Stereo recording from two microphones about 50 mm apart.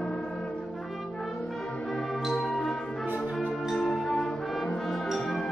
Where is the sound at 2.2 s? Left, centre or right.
Centre.